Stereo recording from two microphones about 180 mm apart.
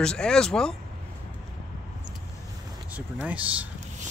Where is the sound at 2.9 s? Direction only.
5° right (ahead or behind).